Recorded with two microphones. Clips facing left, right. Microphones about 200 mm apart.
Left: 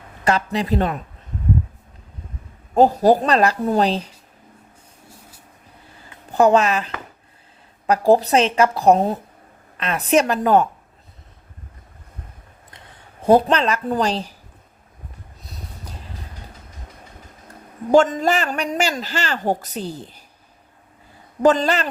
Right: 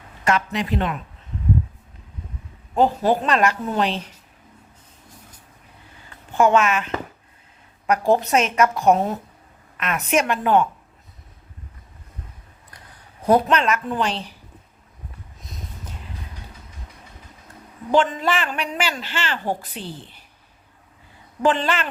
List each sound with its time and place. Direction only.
0.3 s a man's voice: 35° left (ahead or behind)
2.7 s a man's voice: 40° left (ahead or behind)
6.3 s a man's voice: 35° left (ahead or behind)
12.7 s speech: 25° left (ahead or behind)
17.9 s a man's voice: 45° left (ahead or behind)
21.4 s a man's voice: 40° left (ahead or behind)